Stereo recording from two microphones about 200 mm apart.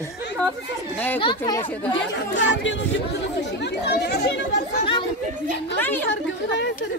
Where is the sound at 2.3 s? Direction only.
65° left (ahead or behind).